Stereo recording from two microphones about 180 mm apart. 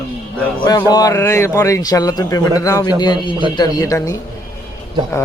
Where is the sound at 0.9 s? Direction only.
20° left (ahead or behind).